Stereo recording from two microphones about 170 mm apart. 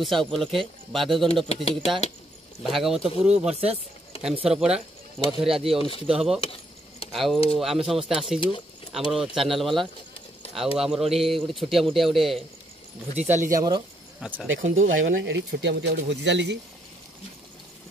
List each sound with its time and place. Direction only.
0.0 s speech: centre (ahead or behind)
1.3 s speech: 35° left (ahead or behind)
2.6 s speech: centre (ahead or behind)
5.8 s speech: 35° left (ahead or behind)
6.0 s speech: 5° right (ahead or behind)
6.4 s keys jangling: 35° left (ahead or behind)
7.1 s speech: centre (ahead or behind)
13.1 s speech: 40° right (ahead or behind)
13.6 s speech: 25° right (ahead or behind)
14.2 s speech: 5° right (ahead or behind)
14.6 s speech: 90° right